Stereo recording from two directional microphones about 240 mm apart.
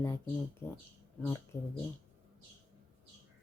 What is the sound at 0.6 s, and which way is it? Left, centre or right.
Speech, centre.